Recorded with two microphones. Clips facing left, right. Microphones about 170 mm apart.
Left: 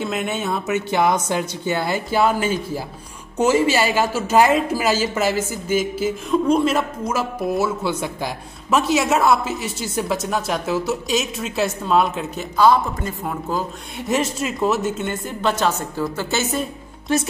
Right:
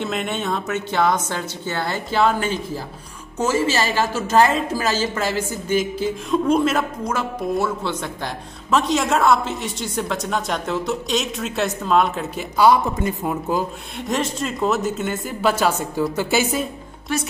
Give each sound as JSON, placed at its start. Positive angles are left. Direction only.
{"t": 0.0, "sound": "a woman's voice", "side_deg": 5}
{"t": 12.5, "sound": "a man's voice", "side_deg": -15}
{"t": 13.9, "sound": "a woman's voice", "side_deg": 5}